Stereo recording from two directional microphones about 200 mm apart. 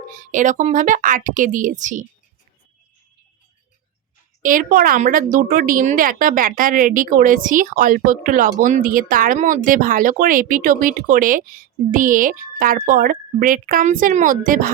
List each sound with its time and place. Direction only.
0.1 s speech: 40° right (ahead or behind)
4.4 s speech: 45° right (ahead or behind)